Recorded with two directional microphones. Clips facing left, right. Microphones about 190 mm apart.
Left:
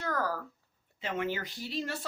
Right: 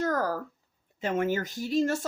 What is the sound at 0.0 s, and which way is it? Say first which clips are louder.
Speech: right 5 dB; 40° right (ahead or behind).